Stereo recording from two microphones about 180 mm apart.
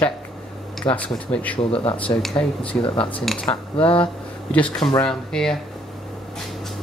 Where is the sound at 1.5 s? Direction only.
30° left (ahead or behind).